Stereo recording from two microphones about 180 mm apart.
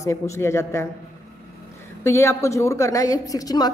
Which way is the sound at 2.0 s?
15° left (ahead or behind).